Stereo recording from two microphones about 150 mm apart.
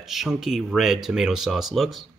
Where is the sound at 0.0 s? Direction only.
Centre (ahead or behind).